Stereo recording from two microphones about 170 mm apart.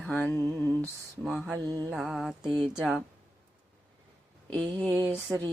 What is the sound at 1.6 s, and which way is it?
Mantra, 20° right (ahead or behind).